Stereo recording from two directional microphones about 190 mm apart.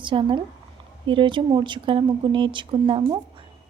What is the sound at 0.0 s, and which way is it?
Speech, 25° right (ahead or behind).